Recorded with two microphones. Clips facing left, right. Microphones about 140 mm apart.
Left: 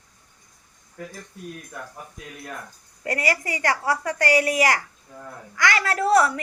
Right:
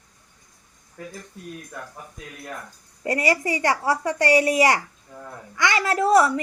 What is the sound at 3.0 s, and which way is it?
A woman's voice, 25° right (ahead or behind).